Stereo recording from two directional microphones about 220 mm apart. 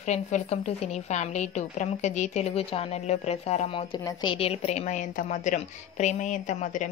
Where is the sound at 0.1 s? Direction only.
30° left (ahead or behind).